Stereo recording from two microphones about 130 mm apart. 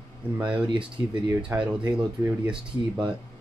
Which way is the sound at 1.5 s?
15° right (ahead or behind).